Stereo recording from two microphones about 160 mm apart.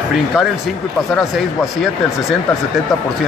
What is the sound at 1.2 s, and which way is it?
Speech, centre (ahead or behind).